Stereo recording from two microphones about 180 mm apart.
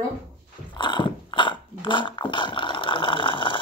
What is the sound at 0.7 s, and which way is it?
Dog, 25° left (ahead or behind).